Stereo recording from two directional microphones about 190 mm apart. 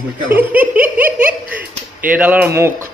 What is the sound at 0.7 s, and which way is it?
Laughter, 10° right (ahead or behind).